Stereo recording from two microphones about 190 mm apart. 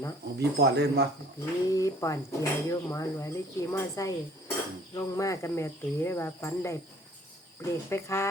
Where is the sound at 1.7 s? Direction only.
15° left (ahead or behind).